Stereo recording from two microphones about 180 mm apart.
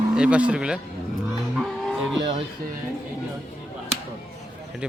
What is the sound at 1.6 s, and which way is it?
Music, centre (ahead or behind).